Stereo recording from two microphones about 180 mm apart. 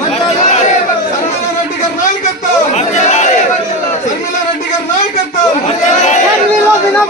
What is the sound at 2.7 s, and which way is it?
Chatter, 40° left (ahead or behind).